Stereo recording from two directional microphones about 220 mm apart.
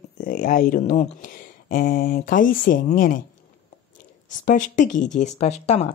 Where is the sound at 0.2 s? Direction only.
35° left (ahead or behind).